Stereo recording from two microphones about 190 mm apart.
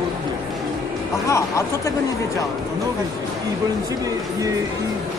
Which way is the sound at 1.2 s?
15° left (ahead or behind).